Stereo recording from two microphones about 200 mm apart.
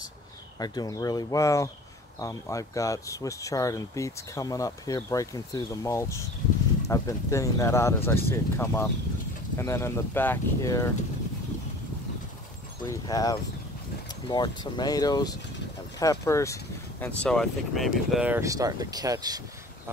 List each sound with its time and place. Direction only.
0.6 s speech: 20° left (ahead or behind)
12.8 s speech: 15° left (ahead or behind)
17.0 s speech: 5° left (ahead or behind); by 19.4 s 20° right (ahead or behind)